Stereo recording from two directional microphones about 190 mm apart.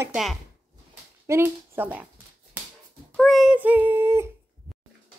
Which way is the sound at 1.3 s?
10° right (ahead or behind).